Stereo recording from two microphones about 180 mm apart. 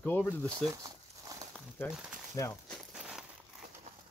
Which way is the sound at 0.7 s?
20° right (ahead or behind).